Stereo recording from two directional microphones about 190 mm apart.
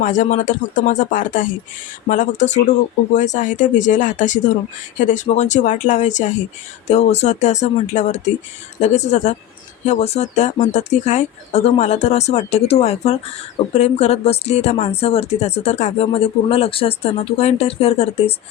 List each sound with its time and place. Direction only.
0.0 s speech: 40° left (ahead or behind)